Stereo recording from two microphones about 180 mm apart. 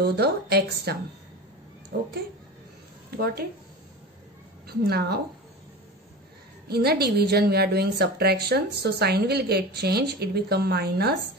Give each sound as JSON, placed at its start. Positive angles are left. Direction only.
{"t": 0.0, "sound": "a woman's voice", "side_deg": -65}
{"t": 4.6, "sound": "a woman's voice", "side_deg": -60}
{"t": 6.7, "sound": "a woman's voice", "side_deg": -65}